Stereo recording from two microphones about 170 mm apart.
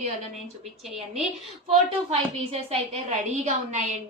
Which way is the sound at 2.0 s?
40° right (ahead or behind).